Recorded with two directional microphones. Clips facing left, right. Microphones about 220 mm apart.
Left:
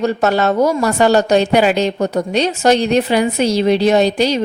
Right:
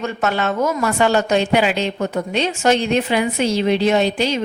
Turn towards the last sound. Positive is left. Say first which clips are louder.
# left 4 dB
turn(degrees=40)  # may be behind; listen again after turning